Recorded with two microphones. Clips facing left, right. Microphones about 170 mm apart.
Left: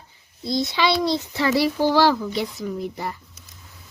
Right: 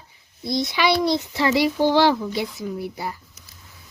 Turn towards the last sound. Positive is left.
turn(degrees=-5)  # may be behind; listen again after turning